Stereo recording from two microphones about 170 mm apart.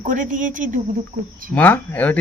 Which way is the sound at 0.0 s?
50° right (ahead or behind).